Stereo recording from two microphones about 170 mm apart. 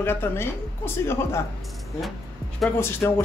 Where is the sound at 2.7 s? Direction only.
15° left (ahead or behind).